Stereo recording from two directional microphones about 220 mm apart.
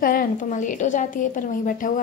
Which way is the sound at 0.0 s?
40° left (ahead or behind).